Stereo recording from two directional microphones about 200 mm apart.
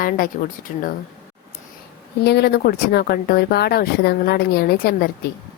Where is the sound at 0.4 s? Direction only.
45° left (ahead or behind).